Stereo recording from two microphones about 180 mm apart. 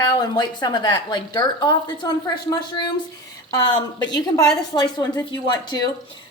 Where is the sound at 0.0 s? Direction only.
25° left (ahead or behind).